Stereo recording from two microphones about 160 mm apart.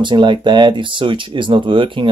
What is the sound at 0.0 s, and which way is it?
Speech, 30° right (ahead or behind).